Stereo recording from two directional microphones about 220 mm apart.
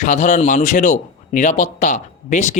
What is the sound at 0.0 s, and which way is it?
A man's voice, 35° left (ahead or behind).